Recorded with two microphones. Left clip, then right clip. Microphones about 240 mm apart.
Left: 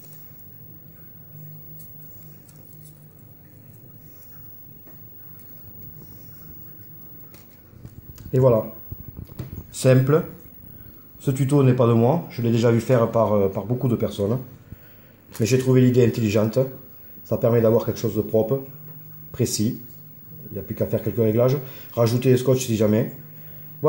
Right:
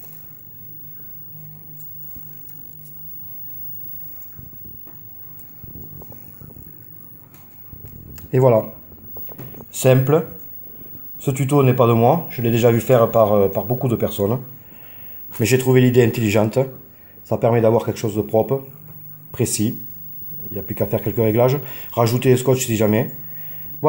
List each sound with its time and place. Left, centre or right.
8.1 s a sound: right
11.1 s speech: centre
15.4 s speech: right